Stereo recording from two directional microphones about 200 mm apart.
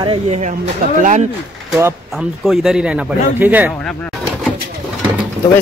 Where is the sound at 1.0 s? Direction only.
35° right (ahead or behind).